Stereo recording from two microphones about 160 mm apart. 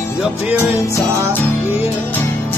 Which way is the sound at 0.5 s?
15° left (ahead or behind).